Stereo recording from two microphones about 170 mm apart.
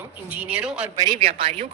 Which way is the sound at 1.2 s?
35° right (ahead or behind).